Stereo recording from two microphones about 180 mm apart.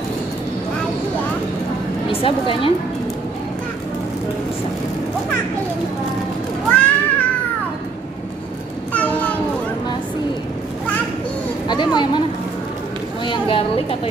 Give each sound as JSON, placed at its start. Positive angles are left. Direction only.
{"t": 2.2, "sound": "a woman's voice", "side_deg": 30}
{"t": 6.7, "sound": "cat", "side_deg": 10}
{"t": 11.6, "sound": "speech", "side_deg": 25}
{"t": 13.2, "sound": "speech", "side_deg": 30}